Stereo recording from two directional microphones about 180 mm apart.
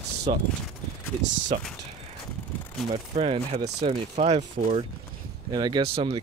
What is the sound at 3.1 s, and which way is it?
Speech, 30° right (ahead or behind).